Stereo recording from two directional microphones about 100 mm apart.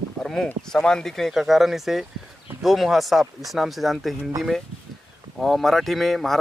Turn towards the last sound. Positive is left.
turn(degrees=0)  # may be behind; listen again after turning